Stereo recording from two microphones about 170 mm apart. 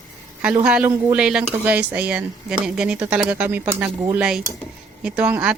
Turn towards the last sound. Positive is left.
turn(degrees=-10)  # may be behind; listen again after turning